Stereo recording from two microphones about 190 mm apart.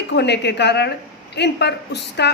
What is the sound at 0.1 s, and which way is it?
A woman's voice, 60° left (ahead or behind).